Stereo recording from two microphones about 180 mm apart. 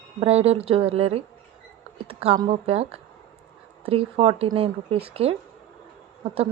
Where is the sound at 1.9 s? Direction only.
35° right (ahead or behind).